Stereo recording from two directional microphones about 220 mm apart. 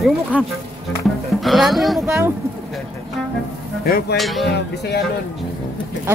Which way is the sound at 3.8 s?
40° left (ahead or behind).